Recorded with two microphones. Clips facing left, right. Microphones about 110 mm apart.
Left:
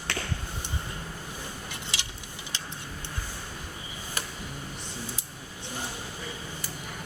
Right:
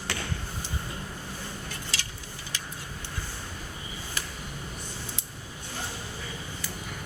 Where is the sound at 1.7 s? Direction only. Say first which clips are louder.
Even; 20° left (ahead or behind).